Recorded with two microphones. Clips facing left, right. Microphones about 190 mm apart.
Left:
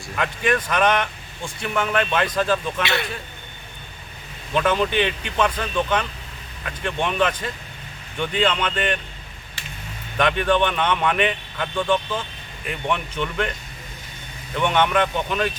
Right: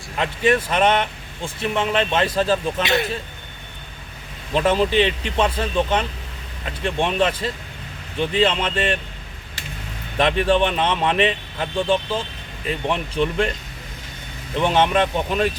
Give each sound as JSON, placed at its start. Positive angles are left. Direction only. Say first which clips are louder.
{"t": 0.2, "sound": "speech", "louder": "right 3 dB", "side_deg": -25}
{"t": 4.5, "sound": "speech", "louder": "right 3 dB", "side_deg": -30}
{"t": 10.2, "sound": "speech", "louder": "right 2 dB", "side_deg": -30}
{"t": 14.5, "sound": "speech", "louder": "right 2 dB", "side_deg": -30}